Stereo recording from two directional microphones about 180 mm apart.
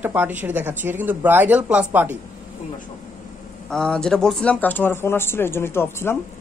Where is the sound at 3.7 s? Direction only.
5° left (ahead or behind).